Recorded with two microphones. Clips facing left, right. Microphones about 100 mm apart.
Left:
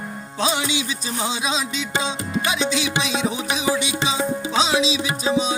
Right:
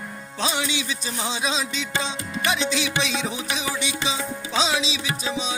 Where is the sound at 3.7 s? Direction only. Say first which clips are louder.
Left 7 dB; 30° left (ahead or behind).